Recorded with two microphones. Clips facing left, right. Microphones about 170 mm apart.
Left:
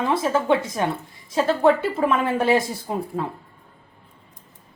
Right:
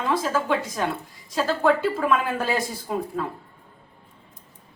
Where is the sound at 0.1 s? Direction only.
25° left (ahead or behind).